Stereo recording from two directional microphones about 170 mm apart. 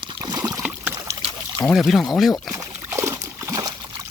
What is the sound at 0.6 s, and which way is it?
Trickle, 10° right (ahead or behind).